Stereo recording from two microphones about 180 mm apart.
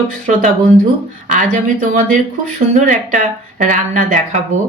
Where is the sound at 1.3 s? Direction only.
45° right (ahead or behind).